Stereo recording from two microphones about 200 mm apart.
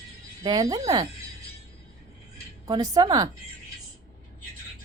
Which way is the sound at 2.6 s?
20° right (ahead or behind).